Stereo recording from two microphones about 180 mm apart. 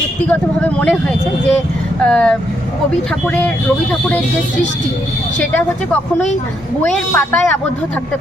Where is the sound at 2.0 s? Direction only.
5° left (ahead or behind).